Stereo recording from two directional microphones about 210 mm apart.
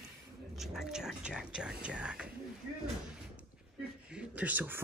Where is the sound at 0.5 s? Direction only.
Centre (ahead or behind).